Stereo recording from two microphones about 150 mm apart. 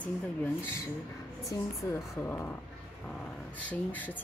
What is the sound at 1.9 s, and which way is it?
Speech, 15° left (ahead or behind).